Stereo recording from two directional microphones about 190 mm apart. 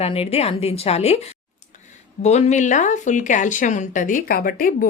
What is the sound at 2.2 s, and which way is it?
Speech, 35° left (ahead or behind).